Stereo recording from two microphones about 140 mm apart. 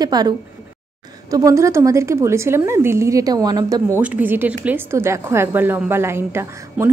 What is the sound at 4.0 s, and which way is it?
A woman's voice, 10° right (ahead or behind).